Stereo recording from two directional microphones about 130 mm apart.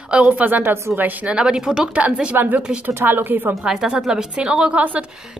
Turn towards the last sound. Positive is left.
turn(degrees=-10)  # may be behind; listen again after turning